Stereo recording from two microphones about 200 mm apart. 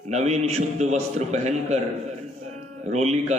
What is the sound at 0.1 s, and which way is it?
Speech, 35° right (ahead or behind).